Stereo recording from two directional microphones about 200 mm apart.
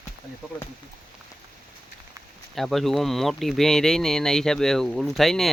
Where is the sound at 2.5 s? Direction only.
Centre (ahead or behind).